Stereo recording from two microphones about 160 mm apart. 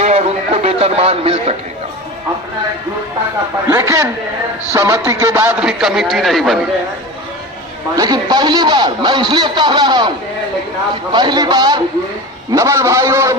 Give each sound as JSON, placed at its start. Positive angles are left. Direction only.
{"t": 0.0, "sound": "a sound", "side_deg": -40}
{"t": 3.7, "sound": "a man's voice", "side_deg": -20}
{"t": 7.9, "sound": "a man's voice", "side_deg": -25}
{"t": 11.1, "sound": "a man's voice", "side_deg": -25}